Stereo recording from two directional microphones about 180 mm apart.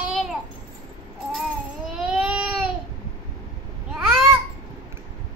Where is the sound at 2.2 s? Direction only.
5° right (ahead or behind).